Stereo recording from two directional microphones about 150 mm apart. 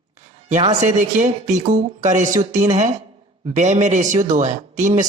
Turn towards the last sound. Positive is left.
turn(degrees=-55)  # may be behind; listen again after turning